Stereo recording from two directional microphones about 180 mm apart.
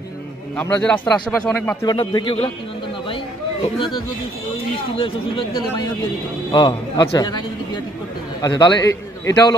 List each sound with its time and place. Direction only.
0.6 s a man's voice: 10° left (ahead or behind)
1.9 s a man's voice: 25° left (ahead or behind)
4.9 s a man's voice: 30° left (ahead or behind)